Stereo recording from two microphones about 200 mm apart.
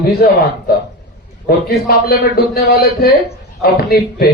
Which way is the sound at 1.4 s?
50° left (ahead or behind).